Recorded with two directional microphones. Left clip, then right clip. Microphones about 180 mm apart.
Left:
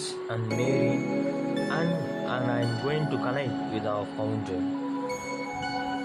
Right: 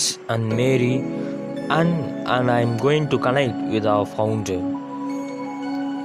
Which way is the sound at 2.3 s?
50° right (ahead or behind).